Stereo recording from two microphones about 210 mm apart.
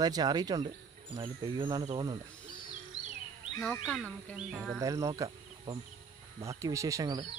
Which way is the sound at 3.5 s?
5° left (ahead or behind).